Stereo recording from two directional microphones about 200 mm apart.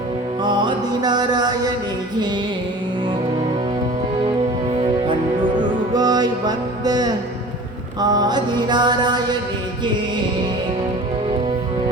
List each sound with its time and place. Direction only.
0.4 s music: 20° right (ahead or behind)
4.8 s music: 25° right (ahead or behind)
7.9 s mantra: 20° right (ahead or behind)